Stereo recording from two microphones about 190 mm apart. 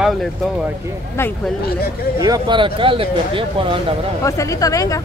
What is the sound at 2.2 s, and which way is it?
Speech, 20° right (ahead or behind).